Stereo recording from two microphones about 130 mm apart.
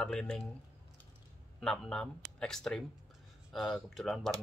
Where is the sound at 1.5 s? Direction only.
Centre (ahead or behind).